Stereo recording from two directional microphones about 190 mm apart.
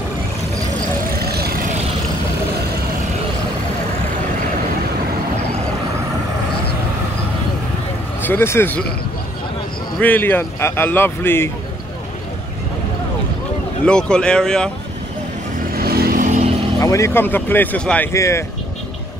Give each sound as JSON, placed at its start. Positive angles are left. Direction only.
{"t": 1.2, "sound": "vehicle", "side_deg": -55}
{"t": 8.3, "sound": "a man's voice", "side_deg": 10}
{"t": 9.9, "sound": "a man's voice", "side_deg": 10}
{"t": 13.8, "sound": "speech", "side_deg": 5}
{"t": 15.7, "sound": "vehicle", "side_deg": -55}
{"t": 16.8, "sound": "a man's voice", "side_deg": 15}